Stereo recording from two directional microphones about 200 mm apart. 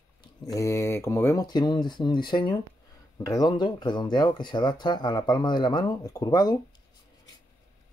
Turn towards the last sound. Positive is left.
turn(degrees=20)  # may be behind; listen again after turning